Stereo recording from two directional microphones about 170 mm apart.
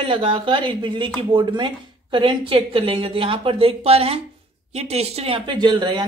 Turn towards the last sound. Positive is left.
turn(degrees=-25)  # may be behind; listen again after turning